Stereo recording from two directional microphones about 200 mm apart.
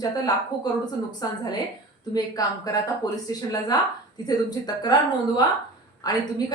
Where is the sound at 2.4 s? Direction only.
20° left (ahead or behind).